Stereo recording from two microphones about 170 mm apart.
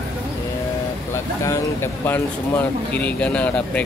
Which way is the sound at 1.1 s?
15° left (ahead or behind).